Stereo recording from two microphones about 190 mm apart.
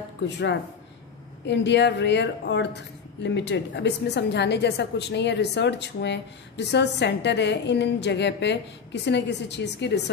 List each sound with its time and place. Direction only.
0.2 s speech: 65° left (ahead or behind)